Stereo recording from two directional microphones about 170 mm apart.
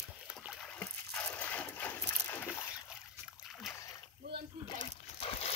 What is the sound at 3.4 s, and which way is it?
Splash, centre (ahead or behind).